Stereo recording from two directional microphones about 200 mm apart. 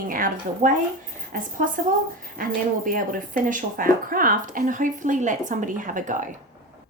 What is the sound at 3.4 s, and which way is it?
Speech, 40° right (ahead or behind).